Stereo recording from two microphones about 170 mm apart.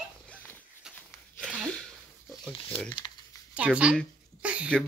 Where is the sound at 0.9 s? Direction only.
5° left (ahead or behind).